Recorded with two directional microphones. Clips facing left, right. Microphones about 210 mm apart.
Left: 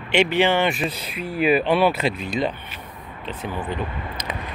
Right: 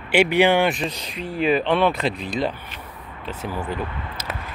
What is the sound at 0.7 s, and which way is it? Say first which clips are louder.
Speech: even; 5° left (ahead or behind).